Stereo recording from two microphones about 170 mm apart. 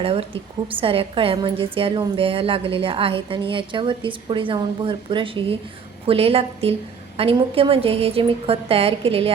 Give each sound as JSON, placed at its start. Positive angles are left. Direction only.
{"t": 0.0, "sound": "a woman's voice", "side_deg": -30}